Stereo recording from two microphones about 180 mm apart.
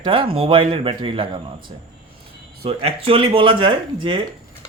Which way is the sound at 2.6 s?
30° right (ahead or behind).